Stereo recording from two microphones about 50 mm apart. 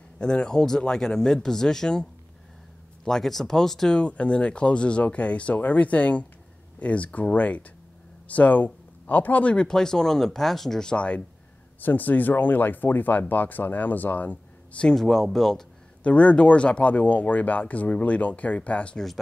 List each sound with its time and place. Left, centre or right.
0.2 s speech: centre
3.1 s speech: centre
4.0 s speech: left
9.7 s speech: centre
11.8 s speech: left
15.0 s speech: centre
16.0 s speech: left